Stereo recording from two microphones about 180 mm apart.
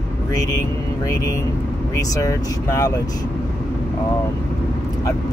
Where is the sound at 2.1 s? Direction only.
20° left (ahead or behind).